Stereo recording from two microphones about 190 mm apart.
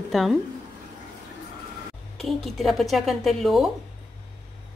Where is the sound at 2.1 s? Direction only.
Centre (ahead or behind).